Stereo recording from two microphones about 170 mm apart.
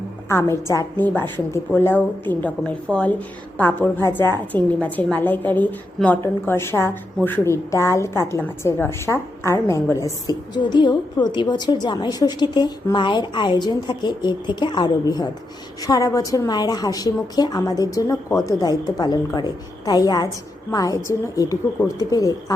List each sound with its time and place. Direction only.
0.3 s a woman's voice: 15° left (ahead or behind)